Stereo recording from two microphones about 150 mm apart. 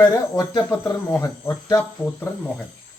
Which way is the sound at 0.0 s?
20° left (ahead or behind).